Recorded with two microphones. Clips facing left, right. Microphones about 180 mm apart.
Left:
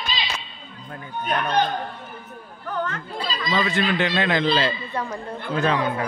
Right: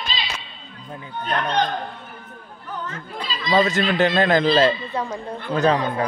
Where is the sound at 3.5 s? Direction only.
40° right (ahead or behind).